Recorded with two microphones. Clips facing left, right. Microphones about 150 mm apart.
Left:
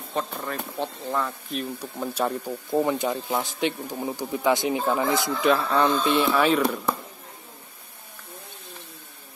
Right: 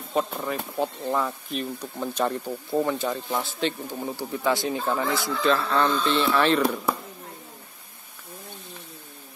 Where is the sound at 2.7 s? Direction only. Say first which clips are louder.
Left 2 dB; 15° left (ahead or behind).